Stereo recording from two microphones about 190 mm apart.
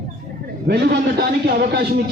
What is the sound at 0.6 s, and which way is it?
Speech, 60° right (ahead or behind).